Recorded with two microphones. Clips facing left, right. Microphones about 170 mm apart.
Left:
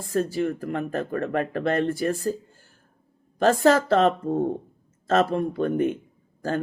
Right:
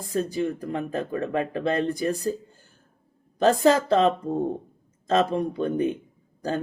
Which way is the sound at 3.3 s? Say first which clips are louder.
Even; 20° right (ahead or behind).